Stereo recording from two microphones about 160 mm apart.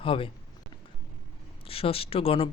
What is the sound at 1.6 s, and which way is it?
Speech, 35° left (ahead or behind).